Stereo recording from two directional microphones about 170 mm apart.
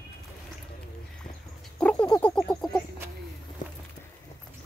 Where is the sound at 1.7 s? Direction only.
5° left (ahead or behind).